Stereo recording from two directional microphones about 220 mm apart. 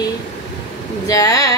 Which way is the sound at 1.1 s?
15° left (ahead or behind).